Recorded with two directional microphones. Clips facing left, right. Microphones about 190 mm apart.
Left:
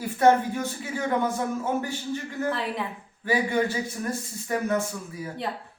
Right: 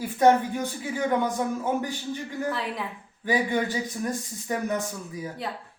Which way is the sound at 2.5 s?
Centre (ahead or behind).